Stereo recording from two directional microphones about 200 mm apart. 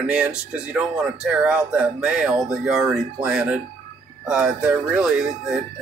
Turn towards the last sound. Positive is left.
turn(degrees=-5)  # may be behind; listen again after turning